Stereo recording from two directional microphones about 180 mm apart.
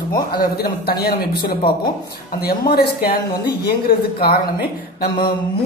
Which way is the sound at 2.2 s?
60° left (ahead or behind).